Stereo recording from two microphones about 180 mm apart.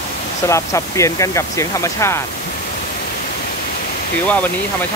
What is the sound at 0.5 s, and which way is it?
Speech, 15° left (ahead or behind).